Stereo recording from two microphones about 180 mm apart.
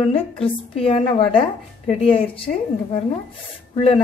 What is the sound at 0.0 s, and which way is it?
A woman's voice, 30° left (ahead or behind).